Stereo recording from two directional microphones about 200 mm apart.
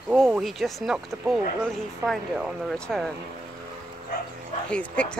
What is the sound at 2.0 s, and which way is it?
Speech, centre (ahead or behind).